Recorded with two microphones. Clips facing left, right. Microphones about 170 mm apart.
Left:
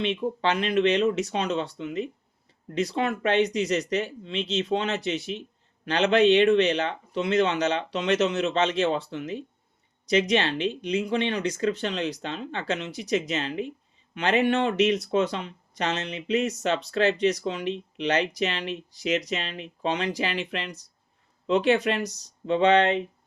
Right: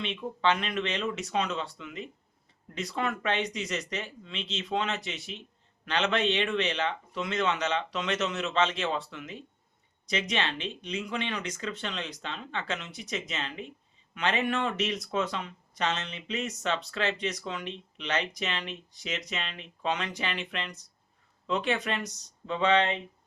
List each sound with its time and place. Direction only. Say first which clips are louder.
0.0 s speech: left 4 dB; 35° left (ahead or behind)